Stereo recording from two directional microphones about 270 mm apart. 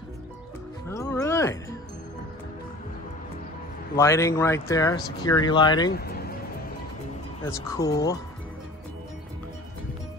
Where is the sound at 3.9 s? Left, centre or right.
Centre.